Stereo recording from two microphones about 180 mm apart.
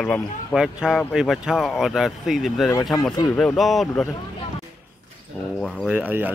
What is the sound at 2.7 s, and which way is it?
Speech, 20° left (ahead or behind).